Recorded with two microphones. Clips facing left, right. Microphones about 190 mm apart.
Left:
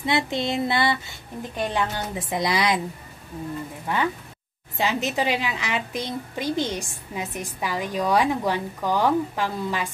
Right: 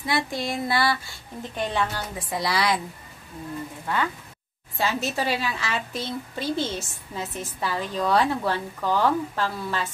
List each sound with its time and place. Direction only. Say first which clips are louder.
0.0 s a woman's voice: left 3 dB; 20° left (ahead or behind)
3.8 s a woman's voice: left 2 dB; 20° left (ahead or behind)